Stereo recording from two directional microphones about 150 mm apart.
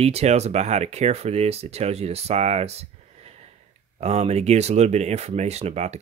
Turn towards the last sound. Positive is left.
turn(degrees=-50)  # may be behind; listen again after turning